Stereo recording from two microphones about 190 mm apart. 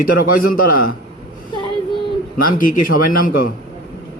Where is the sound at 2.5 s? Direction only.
45° left (ahead or behind).